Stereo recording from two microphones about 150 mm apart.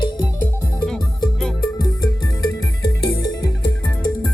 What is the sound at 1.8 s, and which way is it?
Music, 30° left (ahead or behind).